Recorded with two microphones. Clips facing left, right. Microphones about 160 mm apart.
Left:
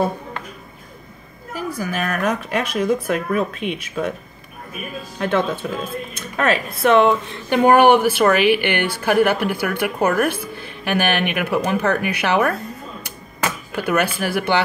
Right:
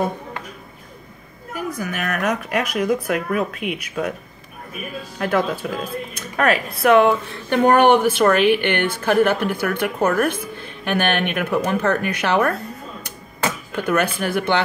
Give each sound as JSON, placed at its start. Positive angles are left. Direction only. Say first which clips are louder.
{"t": 1.5, "sound": "speech", "louder": "left 1 dB", "side_deg": 30}
{"t": 5.2, "sound": "speech", "louder": "even", "side_deg": 25}
{"t": 7.4, "sound": "a woman's voice", "louder": "left 1 dB", "side_deg": 10}
{"t": 13.7, "sound": "a woman's voice", "louder": "even", "side_deg": 10}